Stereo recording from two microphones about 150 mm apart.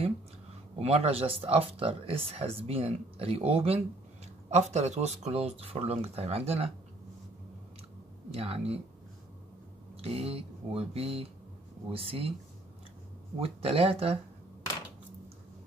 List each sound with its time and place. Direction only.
0.7 s speech: 40° right (ahead or behind)
8.3 s speech: 40° right (ahead or behind)
9.9 s speech: 40° right (ahead or behind)
13.4 s speech: 40° right (ahead or behind)